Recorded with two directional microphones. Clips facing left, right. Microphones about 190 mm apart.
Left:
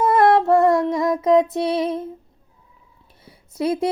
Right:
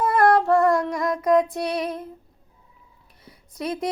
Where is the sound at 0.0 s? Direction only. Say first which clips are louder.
Left 3 dB; 20° left (ahead or behind).